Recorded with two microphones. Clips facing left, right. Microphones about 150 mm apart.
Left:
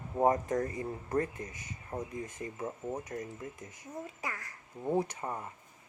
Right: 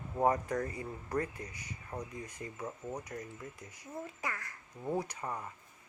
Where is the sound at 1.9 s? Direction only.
25° left (ahead or behind).